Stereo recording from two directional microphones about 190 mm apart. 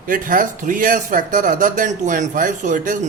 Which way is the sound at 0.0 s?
45° right (ahead or behind).